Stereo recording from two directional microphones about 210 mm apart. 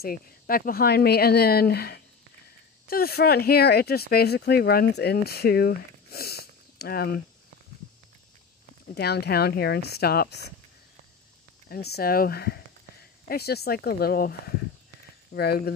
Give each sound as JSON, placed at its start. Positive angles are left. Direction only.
{"t": 0.0, "sound": "speech", "side_deg": 45}
{"t": 8.9, "sound": "speech", "side_deg": 50}
{"t": 11.7, "sound": "speech", "side_deg": 50}
{"t": 15.3, "sound": "speech", "side_deg": 50}